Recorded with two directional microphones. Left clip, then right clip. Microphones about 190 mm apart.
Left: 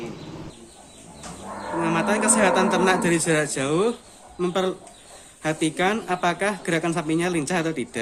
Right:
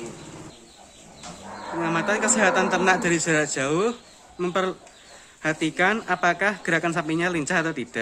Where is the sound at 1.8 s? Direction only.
35° right (ahead or behind).